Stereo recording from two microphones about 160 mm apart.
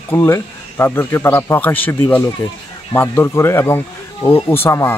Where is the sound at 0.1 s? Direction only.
15° left (ahead or behind).